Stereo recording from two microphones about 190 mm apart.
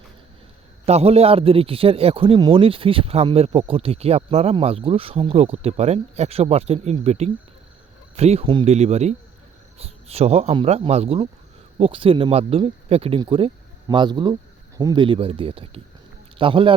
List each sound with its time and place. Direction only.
0.9 s a man's voice: 35° right (ahead or behind)